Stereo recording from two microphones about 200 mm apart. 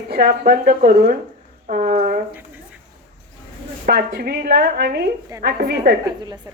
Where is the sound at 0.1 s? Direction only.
45° right (ahead or behind).